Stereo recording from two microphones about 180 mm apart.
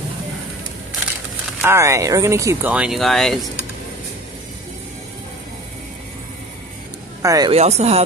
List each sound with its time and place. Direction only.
1.6 s speech: 15° right (ahead or behind)
2.7 s speech: 5° right (ahead or behind)
7.2 s speech: 20° right (ahead or behind)
7.5 s speech: 35° right (ahead or behind)